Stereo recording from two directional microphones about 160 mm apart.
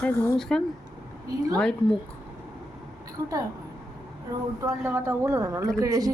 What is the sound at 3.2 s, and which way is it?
Speech, 15° right (ahead or behind).